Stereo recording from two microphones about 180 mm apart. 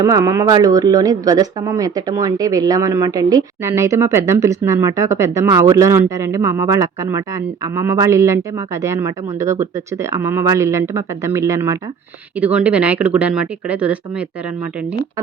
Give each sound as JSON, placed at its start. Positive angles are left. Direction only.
{"t": 0.0, "sound": "speech", "side_deg": -15}